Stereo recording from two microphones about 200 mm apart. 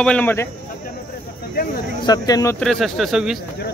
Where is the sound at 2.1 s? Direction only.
20° left (ahead or behind).